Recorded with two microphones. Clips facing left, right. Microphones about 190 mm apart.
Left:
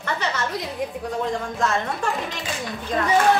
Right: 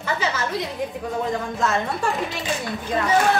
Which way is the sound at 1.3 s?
Centre (ahead or behind).